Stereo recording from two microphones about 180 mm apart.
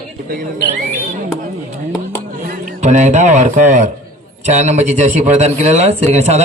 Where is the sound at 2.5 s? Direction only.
40° right (ahead or behind).